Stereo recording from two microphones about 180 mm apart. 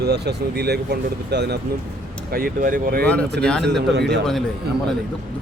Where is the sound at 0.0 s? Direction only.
65° right (ahead or behind).